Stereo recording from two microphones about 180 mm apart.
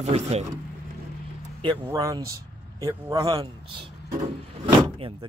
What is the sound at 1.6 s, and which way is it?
Speech, 20° right (ahead or behind).